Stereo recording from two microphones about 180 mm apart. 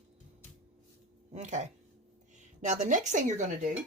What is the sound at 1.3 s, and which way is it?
Speech, 40° right (ahead or behind).